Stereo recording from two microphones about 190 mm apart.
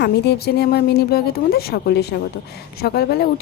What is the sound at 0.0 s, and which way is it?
A woman's voice, 60° left (ahead or behind).